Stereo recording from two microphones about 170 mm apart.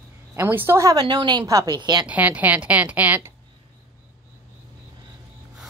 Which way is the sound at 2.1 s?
10° right (ahead or behind).